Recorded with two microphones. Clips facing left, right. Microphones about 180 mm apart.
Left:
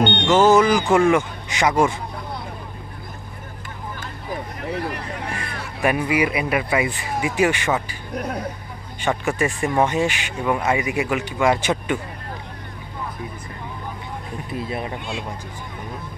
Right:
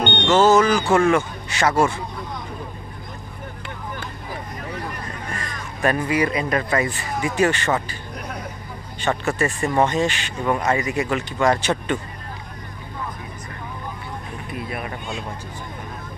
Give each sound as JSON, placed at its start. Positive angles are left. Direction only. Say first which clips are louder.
{"t": 0.3, "sound": "speech", "louder": "even", "side_deg": 15}
{"t": 4.9, "sound": "a sound", "louder": "left 2 dB", "side_deg": 75}
{"t": 5.8, "sound": "speech", "louder": "even", "side_deg": 10}
{"t": 9.0, "sound": "speech", "louder": "even", "side_deg": 10}
{"t": 14.5, "sound": "speech", "louder": "left 3 dB", "side_deg": 25}